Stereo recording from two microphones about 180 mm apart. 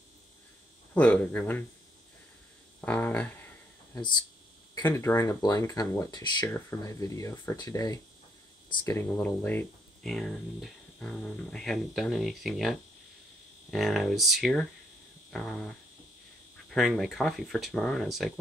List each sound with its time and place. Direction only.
0.9 s speech: 10° left (ahead or behind)
2.8 s speech: 10° left (ahead or behind)
4.7 s speech: 15° left (ahead or behind)
16.7 s speech: centre (ahead or behind)